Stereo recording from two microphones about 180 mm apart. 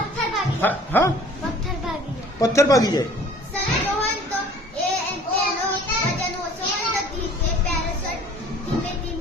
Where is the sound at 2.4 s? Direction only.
20° left (ahead or behind).